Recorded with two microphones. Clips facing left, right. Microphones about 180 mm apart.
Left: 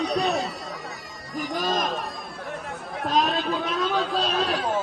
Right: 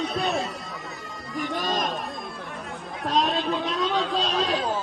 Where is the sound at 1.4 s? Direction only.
Centre (ahead or behind).